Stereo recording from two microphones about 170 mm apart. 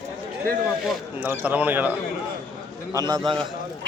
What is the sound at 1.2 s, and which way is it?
Speech, 10° right (ahead or behind).